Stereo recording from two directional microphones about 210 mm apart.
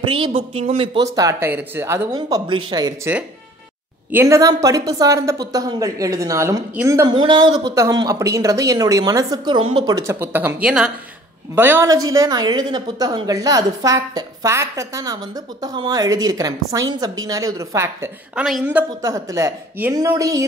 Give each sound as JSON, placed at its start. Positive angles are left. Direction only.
{"t": 0.0, "sound": "speech", "side_deg": -25}
{"t": 1.1, "sound": "a woman's voice", "side_deg": -15}
{"t": 18.9, "sound": "a woman's voice", "side_deg": -15}